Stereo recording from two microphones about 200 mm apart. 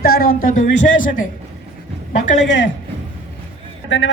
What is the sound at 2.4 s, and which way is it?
Speech, 65° left (ahead or behind).